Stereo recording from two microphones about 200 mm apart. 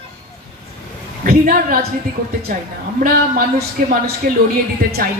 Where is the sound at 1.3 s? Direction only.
45° right (ahead or behind).